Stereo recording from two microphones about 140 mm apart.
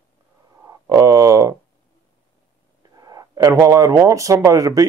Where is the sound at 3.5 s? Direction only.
20° right (ahead or behind).